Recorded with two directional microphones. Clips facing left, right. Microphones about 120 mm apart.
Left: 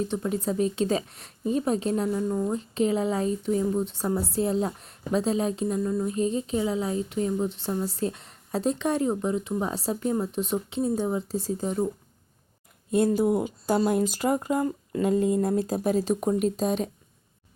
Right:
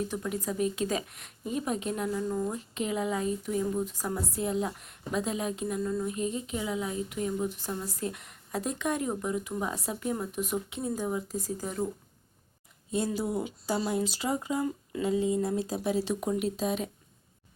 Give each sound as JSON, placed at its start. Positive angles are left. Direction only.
{"t": 0.1, "sound": "speech", "side_deg": 25}
{"t": 12.9, "sound": "speech", "side_deg": 55}